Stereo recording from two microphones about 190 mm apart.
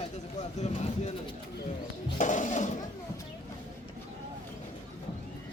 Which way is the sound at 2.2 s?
40° left (ahead or behind).